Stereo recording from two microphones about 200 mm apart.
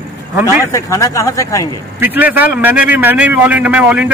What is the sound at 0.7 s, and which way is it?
Speech, 15° left (ahead or behind).